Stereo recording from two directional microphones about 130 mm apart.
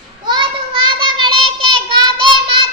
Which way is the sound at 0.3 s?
40° right (ahead or behind).